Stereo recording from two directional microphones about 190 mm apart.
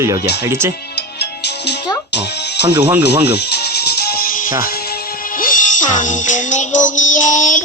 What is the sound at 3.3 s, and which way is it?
Music, 60° left (ahead or behind).